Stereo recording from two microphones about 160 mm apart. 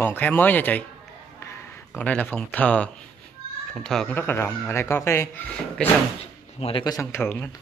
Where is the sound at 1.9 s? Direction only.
10° left (ahead or behind).